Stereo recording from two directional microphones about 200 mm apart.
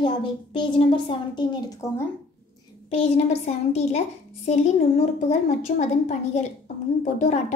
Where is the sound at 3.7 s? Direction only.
35° left (ahead or behind).